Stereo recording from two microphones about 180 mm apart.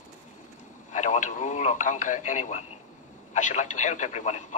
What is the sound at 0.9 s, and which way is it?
A man's voice, 45° left (ahead or behind).